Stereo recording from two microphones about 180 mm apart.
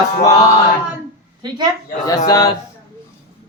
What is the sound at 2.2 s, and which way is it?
Speech, 20° left (ahead or behind).